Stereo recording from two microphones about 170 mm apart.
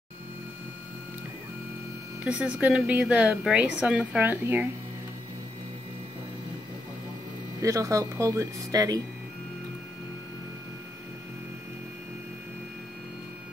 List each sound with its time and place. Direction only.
2.2 s a woman's voice: 5° right (ahead or behind)
7.6 s speech: 20° right (ahead or behind)